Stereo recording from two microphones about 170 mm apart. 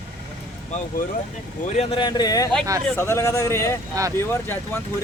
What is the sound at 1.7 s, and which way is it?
A man's voice, 30° left (ahead or behind).